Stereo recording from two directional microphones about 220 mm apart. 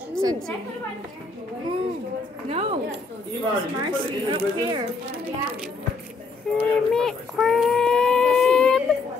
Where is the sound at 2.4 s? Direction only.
25° right (ahead or behind).